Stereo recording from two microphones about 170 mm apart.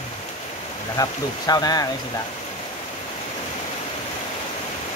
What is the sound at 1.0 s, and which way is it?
Speech, 20° left (ahead or behind).